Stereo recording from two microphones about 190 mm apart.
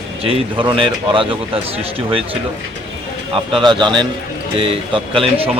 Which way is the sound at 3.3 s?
25° right (ahead or behind).